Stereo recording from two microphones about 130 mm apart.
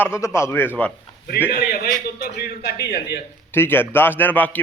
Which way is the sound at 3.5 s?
15° left (ahead or behind).